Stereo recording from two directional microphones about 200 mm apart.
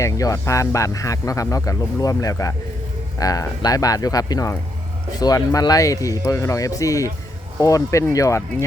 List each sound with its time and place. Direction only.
0.0 s speech: 15° left (ahead or behind)